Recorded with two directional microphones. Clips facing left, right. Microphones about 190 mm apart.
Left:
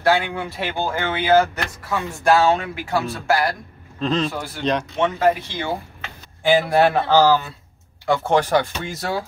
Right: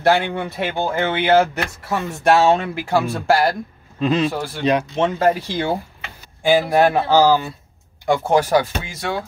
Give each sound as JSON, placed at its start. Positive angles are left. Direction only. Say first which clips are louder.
{"t": 0.0, "sound": "speech", "louder": "right 2 dB", "side_deg": -20}
{"t": 4.0, "sound": "speech", "louder": "right 3 dB", "side_deg": -10}
{"t": 4.9, "sound": "speech", "louder": "right 1 dB", "side_deg": -30}
{"t": 5.9, "sound": "speech", "louder": "left 1 dB", "side_deg": -15}
{"t": 8.8, "sound": "speech", "louder": "even", "side_deg": 5}